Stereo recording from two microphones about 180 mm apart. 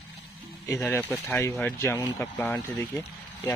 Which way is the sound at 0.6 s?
15° left (ahead or behind).